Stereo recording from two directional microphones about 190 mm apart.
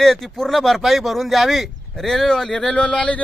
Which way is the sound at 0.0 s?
Centre (ahead or behind).